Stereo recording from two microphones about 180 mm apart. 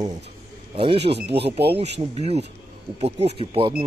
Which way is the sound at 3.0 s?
35° right (ahead or behind).